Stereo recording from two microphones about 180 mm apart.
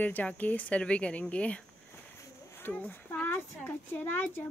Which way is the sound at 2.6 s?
10° left (ahead or behind).